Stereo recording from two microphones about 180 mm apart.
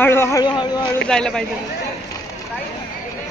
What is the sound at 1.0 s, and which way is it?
Speech, 5° left (ahead or behind).